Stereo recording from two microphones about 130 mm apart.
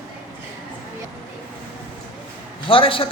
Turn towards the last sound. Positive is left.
turn(degrees=45)  # may be behind; listen again after turning